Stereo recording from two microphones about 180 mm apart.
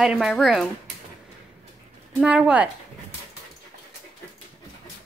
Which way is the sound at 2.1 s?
5° right (ahead or behind).